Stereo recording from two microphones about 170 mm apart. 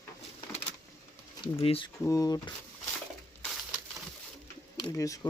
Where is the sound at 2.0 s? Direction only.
20° left (ahead or behind).